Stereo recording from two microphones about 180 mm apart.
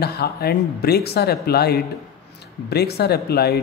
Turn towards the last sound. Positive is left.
turn(degrees=60)  # may be behind; listen again after turning